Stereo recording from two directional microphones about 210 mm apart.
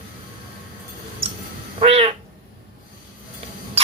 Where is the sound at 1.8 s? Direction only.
30° right (ahead or behind).